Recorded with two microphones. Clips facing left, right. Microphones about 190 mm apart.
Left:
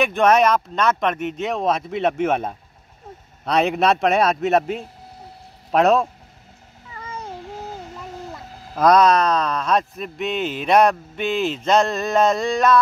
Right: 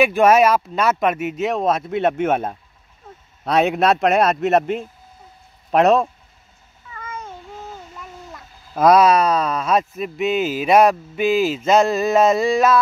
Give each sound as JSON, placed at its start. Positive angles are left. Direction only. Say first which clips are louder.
{"t": 0.0, "sound": "speech", "louder": "right 3 dB", "side_deg": -5}
{"t": 6.9, "sound": "babbling", "louder": "even", "side_deg": 35}
{"t": 8.7, "sound": "speech", "louder": "right 2 dB", "side_deg": -5}